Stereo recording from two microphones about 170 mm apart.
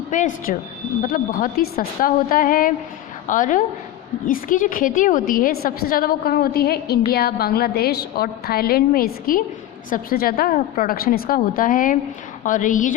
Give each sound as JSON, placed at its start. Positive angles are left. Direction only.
{"t": 0.1, "sound": "a woman's voice", "side_deg": 50}